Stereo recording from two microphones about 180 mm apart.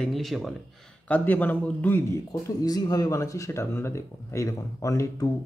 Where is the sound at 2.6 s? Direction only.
20° left (ahead or behind).